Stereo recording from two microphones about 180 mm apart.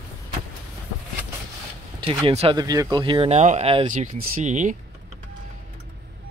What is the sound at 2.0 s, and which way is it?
Speech, 25° right (ahead or behind).